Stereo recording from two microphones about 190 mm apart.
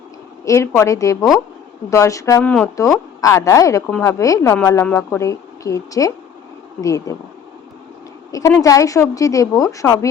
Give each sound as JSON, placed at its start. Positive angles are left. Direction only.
{"t": 0.4, "sound": "speech", "side_deg": 15}
{"t": 8.3, "sound": "speech", "side_deg": 15}